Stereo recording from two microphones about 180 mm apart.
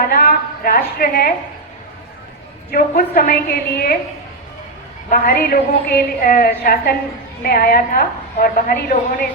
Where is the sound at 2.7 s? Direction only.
55° left (ahead or behind).